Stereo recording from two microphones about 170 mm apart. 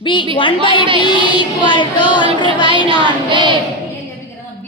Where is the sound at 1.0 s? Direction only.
25° left (ahead or behind).